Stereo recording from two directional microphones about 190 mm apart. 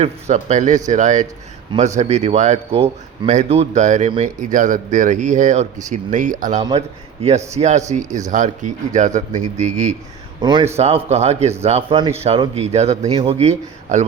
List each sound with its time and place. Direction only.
0.0 s speech: 35° right (ahead or behind)
10.4 s speech: 25° right (ahead or behind)
10.8 s speech: 35° right (ahead or behind)